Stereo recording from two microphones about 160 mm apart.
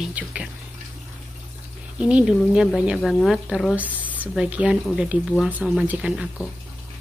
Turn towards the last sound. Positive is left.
turn(degrees=-5)  # may be behind; listen again after turning